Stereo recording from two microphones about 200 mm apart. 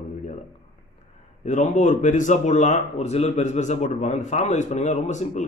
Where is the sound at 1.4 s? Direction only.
35° left (ahead or behind).